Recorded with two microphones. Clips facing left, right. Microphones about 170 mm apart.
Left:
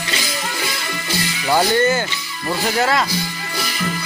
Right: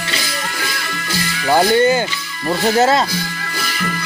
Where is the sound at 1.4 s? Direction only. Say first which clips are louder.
Right 3 dB; 15° right (ahead or behind).